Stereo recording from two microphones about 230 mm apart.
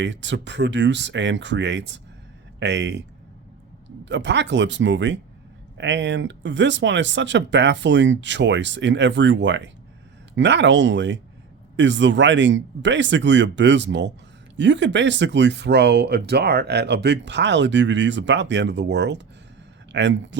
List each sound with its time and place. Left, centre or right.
0.0 s speech: right
4.0 s speech: right